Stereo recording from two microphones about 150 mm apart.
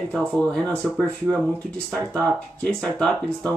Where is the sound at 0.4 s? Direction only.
5° left (ahead or behind).